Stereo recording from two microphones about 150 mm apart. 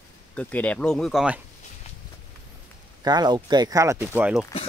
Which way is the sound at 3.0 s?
30° right (ahead or behind).